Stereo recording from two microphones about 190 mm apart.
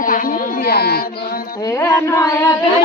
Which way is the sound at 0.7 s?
55° left (ahead or behind).